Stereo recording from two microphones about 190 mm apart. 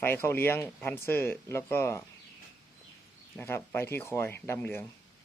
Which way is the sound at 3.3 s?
10° left (ahead or behind).